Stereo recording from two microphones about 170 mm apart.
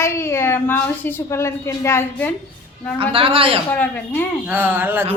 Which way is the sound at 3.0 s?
30° right (ahead or behind).